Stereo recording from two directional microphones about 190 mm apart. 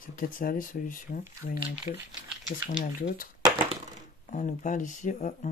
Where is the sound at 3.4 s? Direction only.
25° right (ahead or behind).